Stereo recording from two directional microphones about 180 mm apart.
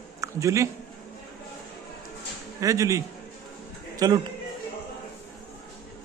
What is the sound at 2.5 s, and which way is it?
Speech, 20° right (ahead or behind).